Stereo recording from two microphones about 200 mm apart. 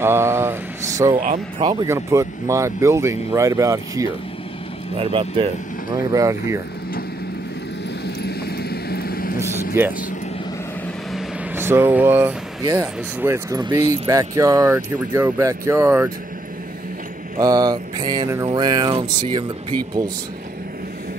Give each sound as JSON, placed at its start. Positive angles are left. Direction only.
{"t": 0.0, "sound": "speech", "side_deg": -10}
{"t": 4.9, "sound": "a sound", "side_deg": -30}
{"t": 6.1, "sound": "speech", "side_deg": -15}
{"t": 8.2, "sound": "vehicle", "side_deg": 50}
{"t": 9.4, "sound": "speech", "side_deg": -10}
{"t": 11.1, "sound": "speech", "side_deg": -10}
{"t": 17.4, "sound": "a sound", "side_deg": -20}